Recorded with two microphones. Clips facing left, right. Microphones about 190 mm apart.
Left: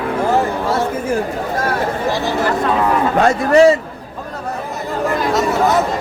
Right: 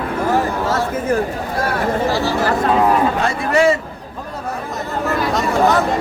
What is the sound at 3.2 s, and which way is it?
Speech, 35° left (ahead or behind).